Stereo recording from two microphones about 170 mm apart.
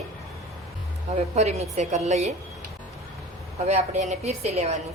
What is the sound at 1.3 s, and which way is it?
Speech, 40° right (ahead or behind).